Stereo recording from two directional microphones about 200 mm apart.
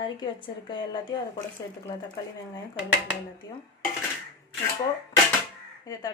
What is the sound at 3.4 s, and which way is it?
Speech, 20° left (ahead or behind).